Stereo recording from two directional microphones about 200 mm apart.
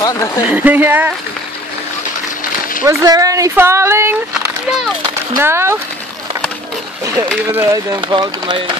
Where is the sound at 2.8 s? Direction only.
15° right (ahead or behind).